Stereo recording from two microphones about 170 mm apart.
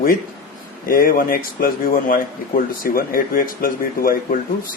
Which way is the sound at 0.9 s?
55° left (ahead or behind).